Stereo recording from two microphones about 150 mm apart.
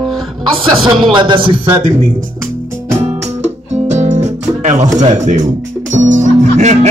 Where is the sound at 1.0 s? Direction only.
30° right (ahead or behind).